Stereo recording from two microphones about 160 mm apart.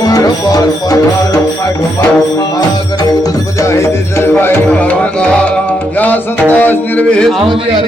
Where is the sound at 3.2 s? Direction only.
20° left (ahead or behind).